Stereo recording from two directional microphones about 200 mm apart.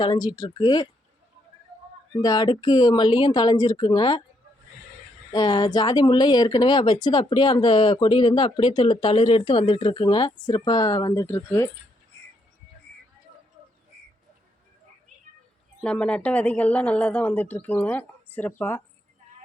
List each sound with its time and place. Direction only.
0.0 s speech: 20° left (ahead or behind)
2.2 s speech: 20° left (ahead or behind)
5.3 s speech: 20° left (ahead or behind)
15.8 s speech: 5° left (ahead or behind)